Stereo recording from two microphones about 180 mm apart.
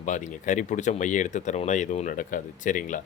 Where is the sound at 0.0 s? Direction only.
45° left (ahead or behind).